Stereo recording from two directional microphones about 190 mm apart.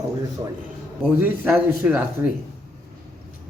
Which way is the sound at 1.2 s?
10° right (ahead or behind).